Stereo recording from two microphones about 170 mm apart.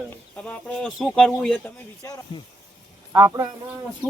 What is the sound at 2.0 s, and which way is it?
Speech, 20° left (ahead or behind).